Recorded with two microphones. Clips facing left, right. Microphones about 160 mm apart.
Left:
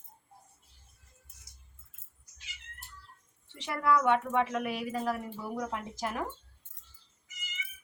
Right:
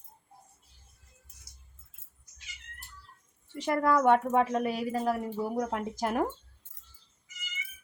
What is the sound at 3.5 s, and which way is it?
A woman's voice, 45° right (ahead or behind).